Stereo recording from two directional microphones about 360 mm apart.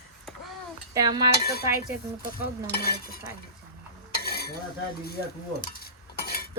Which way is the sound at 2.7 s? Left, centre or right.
Left.